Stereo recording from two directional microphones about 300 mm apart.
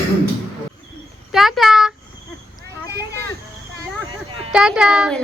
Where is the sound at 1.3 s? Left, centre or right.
Centre.